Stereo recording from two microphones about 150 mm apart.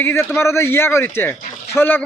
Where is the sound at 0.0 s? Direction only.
15° left (ahead or behind).